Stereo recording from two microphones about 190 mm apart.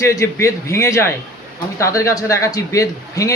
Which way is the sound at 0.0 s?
15° left (ahead or behind).